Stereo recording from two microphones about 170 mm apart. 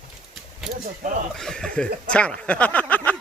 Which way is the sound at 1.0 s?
50° right (ahead or behind).